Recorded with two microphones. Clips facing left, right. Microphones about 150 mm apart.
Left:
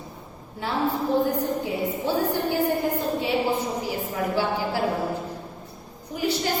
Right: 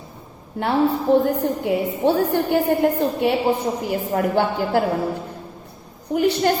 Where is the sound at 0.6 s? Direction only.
65° right (ahead or behind).